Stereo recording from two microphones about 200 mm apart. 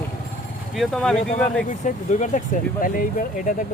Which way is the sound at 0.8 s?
5° left (ahead or behind).